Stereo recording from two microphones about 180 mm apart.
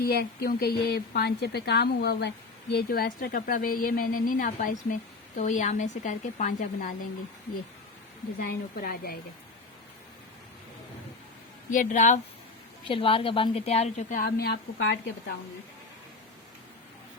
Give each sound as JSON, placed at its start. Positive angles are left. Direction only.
{"t": 0.0, "sound": "a woman's voice", "side_deg": 60}
{"t": 8.4, "sound": "a woman's voice", "side_deg": 50}
{"t": 11.7, "sound": "a woman's voice", "side_deg": 45}
{"t": 12.9, "sound": "a woman's voice", "side_deg": 30}